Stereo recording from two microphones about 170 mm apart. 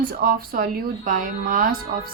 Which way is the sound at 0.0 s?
60° right (ahead or behind).